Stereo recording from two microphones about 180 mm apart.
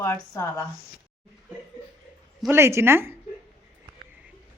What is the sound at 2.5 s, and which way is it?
Speech, 15° right (ahead or behind).